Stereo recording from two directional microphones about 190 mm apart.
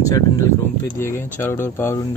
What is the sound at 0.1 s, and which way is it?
Speech, 15° left (ahead or behind).